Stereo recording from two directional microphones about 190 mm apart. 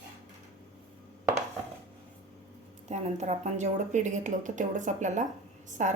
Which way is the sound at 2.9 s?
35° right (ahead or behind).